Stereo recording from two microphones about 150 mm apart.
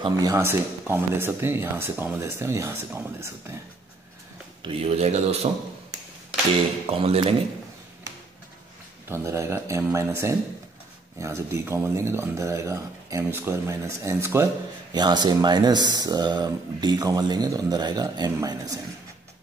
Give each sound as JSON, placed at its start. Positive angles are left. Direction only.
{"t": 0.0, "sound": "speech", "side_deg": -25}
{"t": 4.6, "sound": "speech", "side_deg": -40}
{"t": 6.9, "sound": "speech", "side_deg": -40}
{"t": 9.1, "sound": "speech", "side_deg": -20}